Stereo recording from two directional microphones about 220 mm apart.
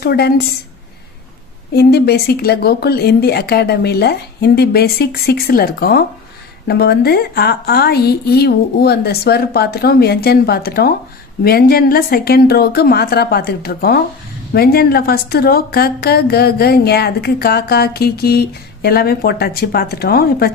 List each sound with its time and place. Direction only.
0.0 s a woman's voice: 45° left (ahead or behind)
1.7 s a woman's voice: 45° left (ahead or behind)